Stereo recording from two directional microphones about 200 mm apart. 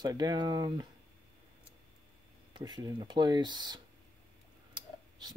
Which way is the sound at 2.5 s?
20° right (ahead or behind).